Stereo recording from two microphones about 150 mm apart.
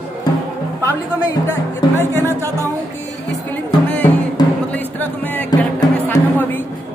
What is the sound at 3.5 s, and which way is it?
Music, 10° left (ahead or behind).